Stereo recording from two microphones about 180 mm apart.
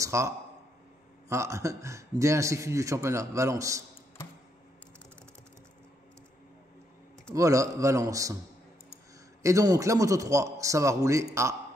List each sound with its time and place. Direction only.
0.0 s a man's voice: 15° right (ahead or behind)
1.3 s a man's voice: 15° right (ahead or behind)
7.3 s a man's voice: 20° right (ahead or behind)
9.4 s a man's voice: 15° right (ahead or behind)